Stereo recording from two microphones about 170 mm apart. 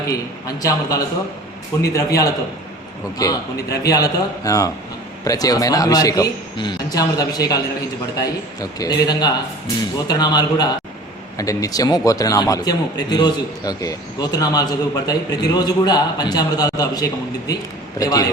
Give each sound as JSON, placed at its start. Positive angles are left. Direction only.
{"t": 0.1, "sound": "a man's voice", "side_deg": 20}